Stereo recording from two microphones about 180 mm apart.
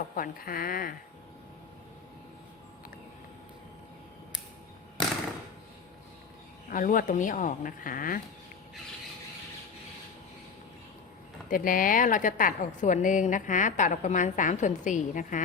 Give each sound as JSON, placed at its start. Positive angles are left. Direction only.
{"t": 0.2, "sound": "a woman's voice", "side_deg": 55}
{"t": 6.7, "sound": "a woman's voice", "side_deg": 50}
{"t": 11.4, "sound": "a woman's voice", "side_deg": 50}